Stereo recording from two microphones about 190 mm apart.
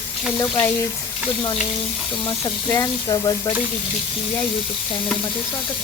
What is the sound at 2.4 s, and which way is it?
Speech, 15° left (ahead or behind).